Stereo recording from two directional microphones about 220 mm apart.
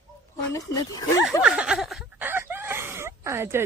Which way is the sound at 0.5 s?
15° left (ahead or behind).